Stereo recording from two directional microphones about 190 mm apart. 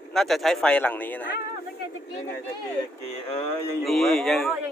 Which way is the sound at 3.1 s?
35° left (ahead or behind).